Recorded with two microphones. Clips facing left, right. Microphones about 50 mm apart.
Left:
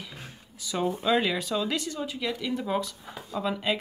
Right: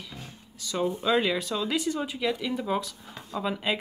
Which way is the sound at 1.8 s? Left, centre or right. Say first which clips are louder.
Right 3 dB; centre.